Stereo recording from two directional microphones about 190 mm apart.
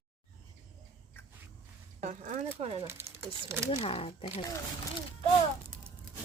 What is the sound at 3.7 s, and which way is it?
Speech, 30° left (ahead or behind).